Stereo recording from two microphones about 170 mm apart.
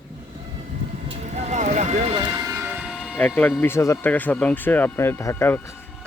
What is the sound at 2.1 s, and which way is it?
Speech, 25° right (ahead or behind).